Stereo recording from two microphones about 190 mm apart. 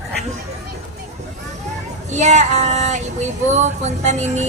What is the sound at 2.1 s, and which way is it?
A woman's voice, 35° right (ahead or behind).